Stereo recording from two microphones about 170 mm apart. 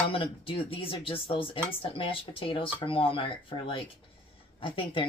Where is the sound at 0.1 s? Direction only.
30° left (ahead or behind).